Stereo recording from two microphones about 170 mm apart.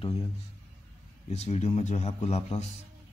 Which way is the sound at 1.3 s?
40° left (ahead or behind).